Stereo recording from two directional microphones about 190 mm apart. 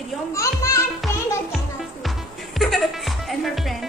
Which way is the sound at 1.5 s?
Centre (ahead or behind).